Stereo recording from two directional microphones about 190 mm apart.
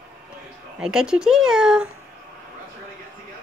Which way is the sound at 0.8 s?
5° right (ahead or behind).